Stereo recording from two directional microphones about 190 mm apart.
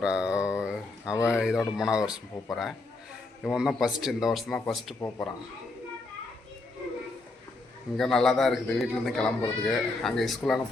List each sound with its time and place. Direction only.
0.0 s a sound: 5° right (ahead or behind)
1.3 s speech: 5° right (ahead or behind)
4.9 s speech: 15° left (ahead or behind)
7.9 s speech: centre (ahead or behind)